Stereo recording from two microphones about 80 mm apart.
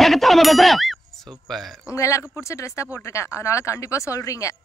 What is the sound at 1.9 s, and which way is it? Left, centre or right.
Speech, left.